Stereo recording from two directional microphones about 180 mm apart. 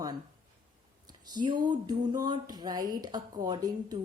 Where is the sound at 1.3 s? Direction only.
25° right (ahead or behind).